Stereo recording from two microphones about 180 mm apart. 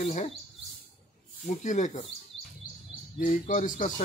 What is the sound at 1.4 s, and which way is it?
Speech, 45° left (ahead or behind).